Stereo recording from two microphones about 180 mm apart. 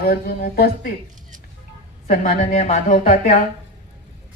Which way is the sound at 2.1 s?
50° left (ahead or behind).